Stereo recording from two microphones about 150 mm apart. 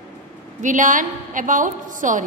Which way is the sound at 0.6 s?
60° right (ahead or behind).